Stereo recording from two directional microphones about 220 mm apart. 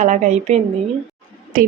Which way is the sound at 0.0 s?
30° right (ahead or behind).